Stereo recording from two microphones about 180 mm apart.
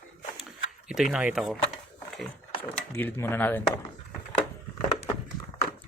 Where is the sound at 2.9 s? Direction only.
10° left (ahead or behind).